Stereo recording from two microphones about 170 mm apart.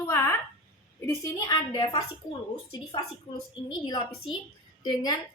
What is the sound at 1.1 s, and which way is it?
A woman's voice, 20° left (ahead or behind).